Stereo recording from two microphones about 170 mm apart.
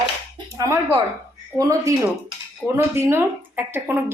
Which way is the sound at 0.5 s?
20° right (ahead or behind).